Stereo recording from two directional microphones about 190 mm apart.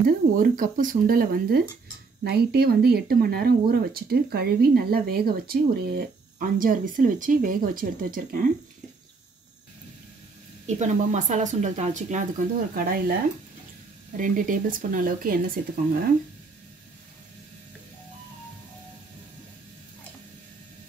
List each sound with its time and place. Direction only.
0.0 s speech: 45° right (ahead or behind)
10.8 s speech: 40° right (ahead or behind)
14.1 s speech: 45° right (ahead or behind)